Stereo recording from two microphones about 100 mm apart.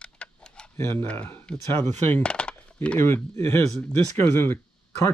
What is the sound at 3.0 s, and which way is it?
Speech, 25° left (ahead or behind).